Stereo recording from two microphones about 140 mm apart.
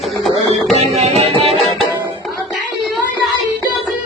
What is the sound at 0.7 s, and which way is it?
Music, 50° right (ahead or behind).